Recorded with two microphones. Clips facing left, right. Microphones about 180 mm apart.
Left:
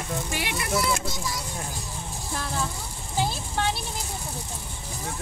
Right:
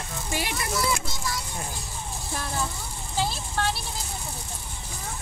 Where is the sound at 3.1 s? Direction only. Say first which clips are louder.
Left 1 dB; 15° left (ahead or behind).